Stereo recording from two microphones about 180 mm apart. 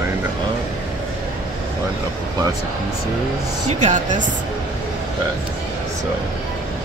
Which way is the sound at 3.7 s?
40° right (ahead or behind).